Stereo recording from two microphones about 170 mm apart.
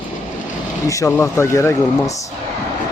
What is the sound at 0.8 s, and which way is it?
Speech, 20° left (ahead or behind).